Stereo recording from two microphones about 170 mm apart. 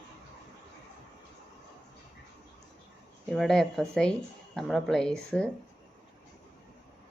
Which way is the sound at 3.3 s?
Centre (ahead or behind).